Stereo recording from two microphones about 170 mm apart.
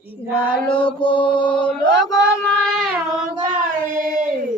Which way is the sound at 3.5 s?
55° right (ahead or behind).